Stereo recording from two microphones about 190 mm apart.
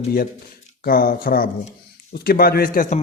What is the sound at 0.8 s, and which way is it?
Speech, 50° left (ahead or behind).